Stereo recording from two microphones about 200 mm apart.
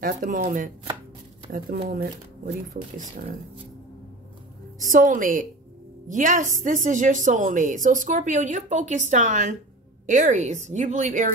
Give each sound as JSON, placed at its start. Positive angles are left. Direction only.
{"t": 0.0, "sound": "speech", "side_deg": -45}
{"t": 4.8, "sound": "a woman's voice", "side_deg": -40}